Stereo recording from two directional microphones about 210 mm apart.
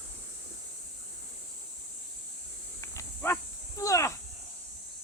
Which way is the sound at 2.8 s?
15° left (ahead or behind).